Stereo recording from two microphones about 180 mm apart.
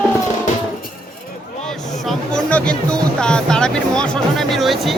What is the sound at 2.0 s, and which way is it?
Speech, 5° left (ahead or behind).